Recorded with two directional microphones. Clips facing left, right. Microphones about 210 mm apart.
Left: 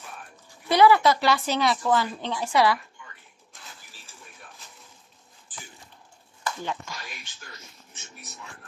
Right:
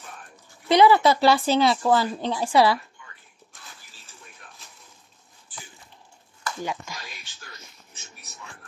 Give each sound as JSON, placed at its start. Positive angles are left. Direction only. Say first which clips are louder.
{"t": 0.7, "sound": "speech", "louder": "right 2 dB", "side_deg": -20}
{"t": 6.6, "sound": "speech", "louder": "right 5 dB", "side_deg": -10}